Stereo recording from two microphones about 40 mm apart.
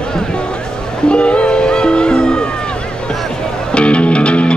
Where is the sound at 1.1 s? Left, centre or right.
Left.